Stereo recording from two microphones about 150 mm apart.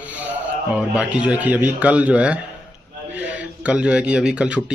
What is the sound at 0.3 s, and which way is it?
Speech, 10° right (ahead or behind).